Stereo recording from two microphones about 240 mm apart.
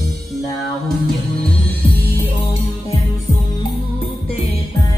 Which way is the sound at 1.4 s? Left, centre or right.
Centre.